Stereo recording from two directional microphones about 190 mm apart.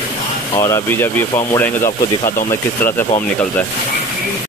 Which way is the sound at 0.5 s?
15° left (ahead or behind).